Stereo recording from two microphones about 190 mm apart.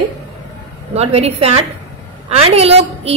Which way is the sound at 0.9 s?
35° right (ahead or behind).